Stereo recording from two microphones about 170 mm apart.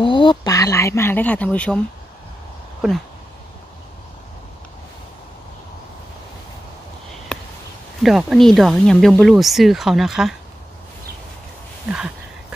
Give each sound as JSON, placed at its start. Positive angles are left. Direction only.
{"t": 0.0, "sound": "speech", "side_deg": 30}
{"t": 2.8, "sound": "speech", "side_deg": 0}
{"t": 8.0, "sound": "speech", "side_deg": 0}
{"t": 11.9, "sound": "a sound", "side_deg": -5}